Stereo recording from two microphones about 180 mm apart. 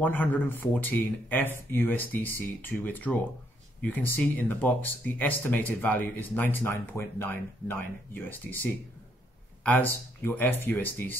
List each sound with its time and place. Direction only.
0.0 s speech: 10° left (ahead or behind)
9.6 s speech: 10° left (ahead or behind)